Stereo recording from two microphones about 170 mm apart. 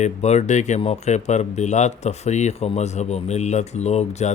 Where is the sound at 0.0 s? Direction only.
40° left (ahead or behind).